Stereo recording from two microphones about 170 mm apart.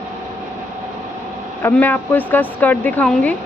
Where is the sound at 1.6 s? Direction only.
10° left (ahead or behind).